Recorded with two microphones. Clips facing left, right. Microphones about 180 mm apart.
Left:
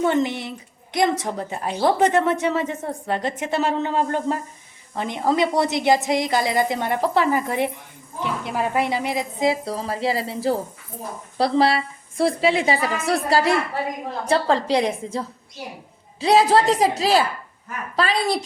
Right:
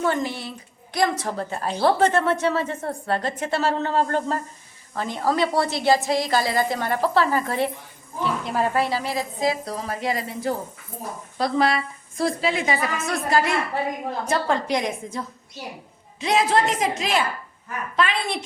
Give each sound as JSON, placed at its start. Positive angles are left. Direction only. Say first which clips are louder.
{"t": 0.0, "sound": "a woman's voice", "louder": "left 4 dB", "side_deg": 20}